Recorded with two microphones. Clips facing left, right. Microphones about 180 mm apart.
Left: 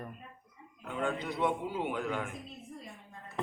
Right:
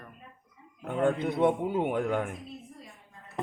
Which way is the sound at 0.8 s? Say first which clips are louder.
Right 7 dB; 55° right (ahead or behind).